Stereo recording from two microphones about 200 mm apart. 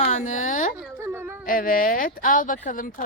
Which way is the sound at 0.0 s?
40° left (ahead or behind).